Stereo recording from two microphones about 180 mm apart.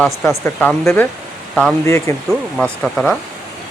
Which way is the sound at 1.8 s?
15° left (ahead or behind).